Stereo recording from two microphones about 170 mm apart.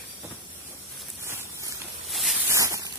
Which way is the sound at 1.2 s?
15° right (ahead or behind).